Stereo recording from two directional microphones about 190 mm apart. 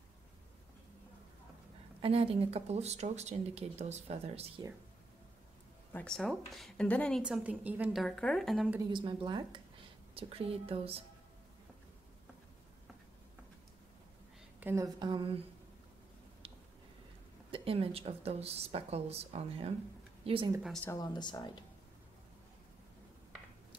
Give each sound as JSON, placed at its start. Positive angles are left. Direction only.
{"t": 2.0, "sound": "speech", "side_deg": -30}
{"t": 5.9, "sound": "a woman's voice", "side_deg": 5}
{"t": 8.9, "sound": "speech", "side_deg": -25}
{"t": 14.6, "sound": "a woman's voice", "side_deg": -10}
{"t": 15.0, "sound": "speech", "side_deg": -25}
{"t": 16.4, "sound": "a sound", "side_deg": -30}
{"t": 17.5, "sound": "speech", "side_deg": -30}
{"t": 20.6, "sound": "a woman's voice", "side_deg": 5}
{"t": 20.9, "sound": "speech", "side_deg": 20}